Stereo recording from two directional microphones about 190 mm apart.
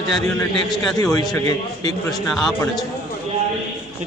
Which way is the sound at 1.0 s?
20° left (ahead or behind).